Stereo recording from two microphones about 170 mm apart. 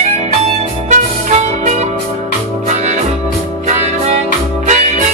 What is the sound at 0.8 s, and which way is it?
Music, 45° right (ahead or behind).